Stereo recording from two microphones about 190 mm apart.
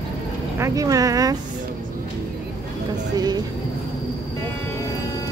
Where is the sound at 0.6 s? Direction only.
20° right (ahead or behind).